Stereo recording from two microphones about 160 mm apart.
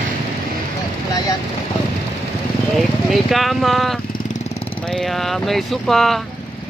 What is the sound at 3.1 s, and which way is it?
Speech, centre (ahead or behind).